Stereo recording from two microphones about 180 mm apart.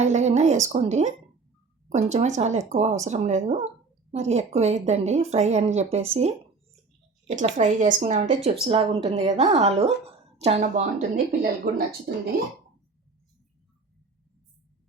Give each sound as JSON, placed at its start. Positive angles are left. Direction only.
{"t": 0.0, "sound": "a woman's voice", "side_deg": -40}
{"t": 8.6, "sound": "speech", "side_deg": -30}